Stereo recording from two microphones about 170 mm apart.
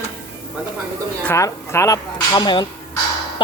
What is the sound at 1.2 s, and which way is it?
Speech, 15° left (ahead or behind).